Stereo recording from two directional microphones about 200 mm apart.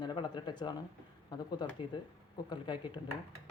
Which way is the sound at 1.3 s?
20° left (ahead or behind).